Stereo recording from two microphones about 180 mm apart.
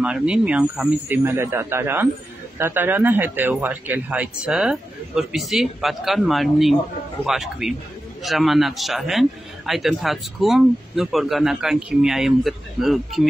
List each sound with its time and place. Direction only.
0.0 s a man's voice: 5° right (ahead or behind)